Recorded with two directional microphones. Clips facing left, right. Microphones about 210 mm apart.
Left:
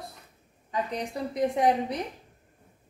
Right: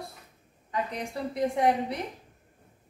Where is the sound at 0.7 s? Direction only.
20° left (ahead or behind).